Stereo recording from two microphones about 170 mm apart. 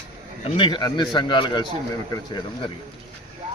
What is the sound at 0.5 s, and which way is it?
A man's voice, 25° left (ahead or behind).